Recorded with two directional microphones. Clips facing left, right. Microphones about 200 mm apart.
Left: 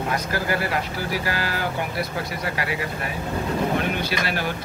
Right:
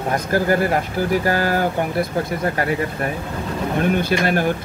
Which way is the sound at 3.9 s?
50° right (ahead or behind).